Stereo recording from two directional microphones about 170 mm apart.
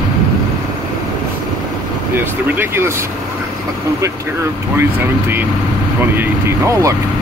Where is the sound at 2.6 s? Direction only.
15° right (ahead or behind).